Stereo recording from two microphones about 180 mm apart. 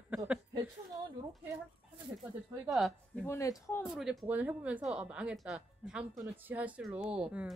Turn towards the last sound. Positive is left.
turn(degrees=-5)  # may be behind; listen again after turning